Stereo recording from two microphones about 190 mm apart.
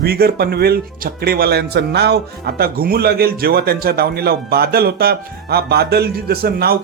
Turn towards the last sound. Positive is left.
turn(degrees=-55)  # may be behind; listen again after turning